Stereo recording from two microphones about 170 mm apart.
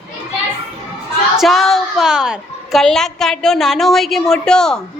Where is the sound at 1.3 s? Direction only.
Centre (ahead or behind).